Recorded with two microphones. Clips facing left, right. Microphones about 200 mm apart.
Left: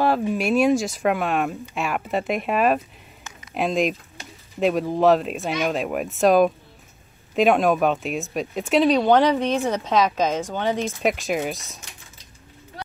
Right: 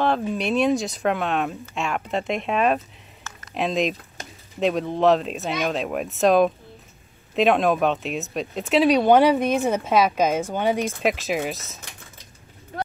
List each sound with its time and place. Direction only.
0.0 s speech: 5° left (ahead or behind); by 10.9 s 10° right (ahead or behind)
11.0 s speech: centre (ahead or behind)